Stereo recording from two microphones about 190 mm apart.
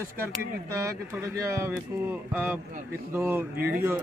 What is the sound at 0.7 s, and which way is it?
A man's voice, 15° right (ahead or behind).